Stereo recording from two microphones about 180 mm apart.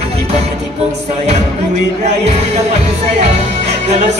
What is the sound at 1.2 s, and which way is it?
Music, 40° right (ahead or behind).